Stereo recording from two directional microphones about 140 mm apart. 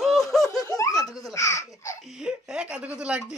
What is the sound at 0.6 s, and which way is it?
Speech, 25° left (ahead or behind).